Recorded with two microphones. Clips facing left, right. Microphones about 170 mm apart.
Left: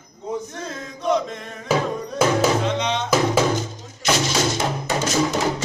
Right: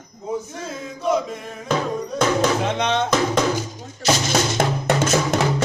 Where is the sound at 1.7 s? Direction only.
5° left (ahead or behind).